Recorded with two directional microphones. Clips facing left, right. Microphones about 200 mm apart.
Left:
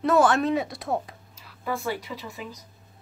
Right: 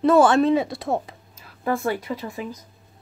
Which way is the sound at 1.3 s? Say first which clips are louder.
Right 6 dB; 50° right (ahead or behind).